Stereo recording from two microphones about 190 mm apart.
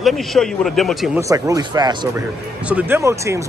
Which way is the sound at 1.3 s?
20° right (ahead or behind).